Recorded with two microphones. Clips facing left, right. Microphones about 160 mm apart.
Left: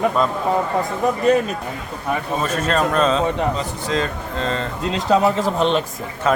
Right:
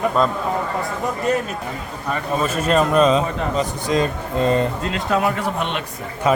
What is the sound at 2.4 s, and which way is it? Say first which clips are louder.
A man's voice: right 3 dB; 10° right (ahead or behind).